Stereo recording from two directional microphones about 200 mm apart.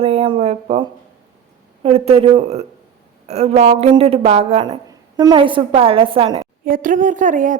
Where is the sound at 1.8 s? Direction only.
30° right (ahead or behind).